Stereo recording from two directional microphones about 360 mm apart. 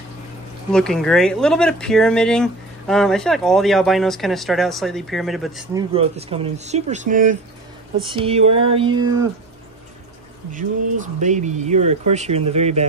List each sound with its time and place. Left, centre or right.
0.7 s speech: centre; by 7.3 s right
8.0 s a sound: centre
11.1 s speech: centre